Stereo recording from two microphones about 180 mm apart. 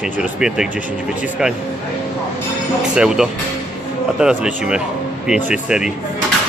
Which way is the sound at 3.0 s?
5° right (ahead or behind).